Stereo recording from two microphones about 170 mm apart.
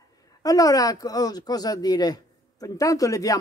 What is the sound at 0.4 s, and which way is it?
Speech, 20° left (ahead or behind).